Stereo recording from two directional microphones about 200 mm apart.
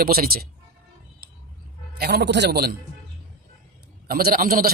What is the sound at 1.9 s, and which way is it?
Speech, 55° right (ahead or behind).